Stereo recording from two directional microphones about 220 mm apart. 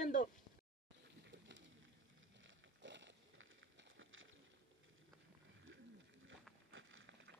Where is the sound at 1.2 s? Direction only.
55° right (ahead or behind).